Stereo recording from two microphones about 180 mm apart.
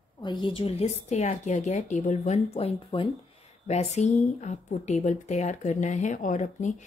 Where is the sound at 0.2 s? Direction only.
25° left (ahead or behind).